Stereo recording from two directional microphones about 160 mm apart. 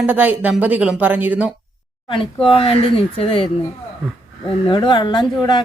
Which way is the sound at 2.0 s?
35° left (ahead or behind).